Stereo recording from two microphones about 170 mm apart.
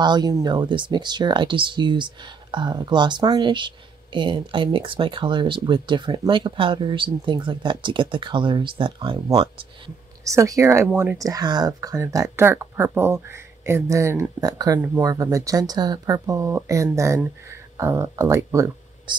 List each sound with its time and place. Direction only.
0.0 s speech: 25° right (ahead or behind)
10.2 s speech: 20° right (ahead or behind)